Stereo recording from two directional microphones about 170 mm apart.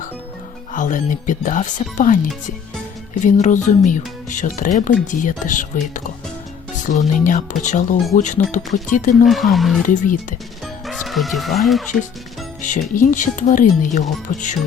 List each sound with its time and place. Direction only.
0.7 s speech: 50° left (ahead or behind)
3.2 s speech: 45° left (ahead or behind)
6.8 s speech: 50° left (ahead or behind)
9.2 s speech: centre (ahead or behind)
9.8 s speech: 50° left (ahead or behind)
10.8 s speech: centre (ahead or behind)
12.9 s speech: 50° left (ahead or behind)